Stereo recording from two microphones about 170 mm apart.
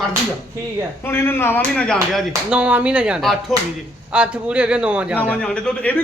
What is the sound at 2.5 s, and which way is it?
Speech, 10° right (ahead or behind).